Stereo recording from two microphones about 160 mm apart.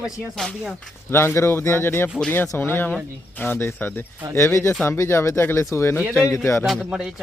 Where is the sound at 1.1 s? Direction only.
15° left (ahead or behind).